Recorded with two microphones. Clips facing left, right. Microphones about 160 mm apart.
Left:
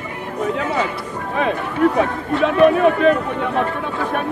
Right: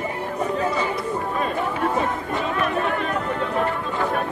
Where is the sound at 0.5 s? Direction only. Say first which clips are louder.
Left 2 dB; 70° left (ahead or behind).